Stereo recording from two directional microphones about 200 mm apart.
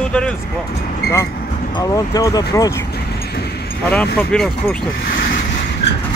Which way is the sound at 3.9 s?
5° left (ahead or behind).